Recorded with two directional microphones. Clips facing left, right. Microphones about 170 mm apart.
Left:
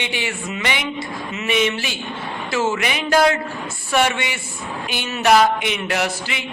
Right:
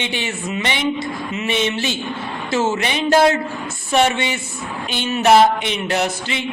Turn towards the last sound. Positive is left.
turn(degrees=-25)  # may be behind; listen again after turning